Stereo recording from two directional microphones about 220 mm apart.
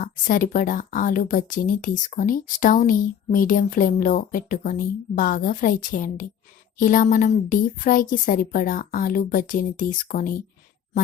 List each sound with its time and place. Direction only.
0.0 s speech: 40° left (ahead or behind)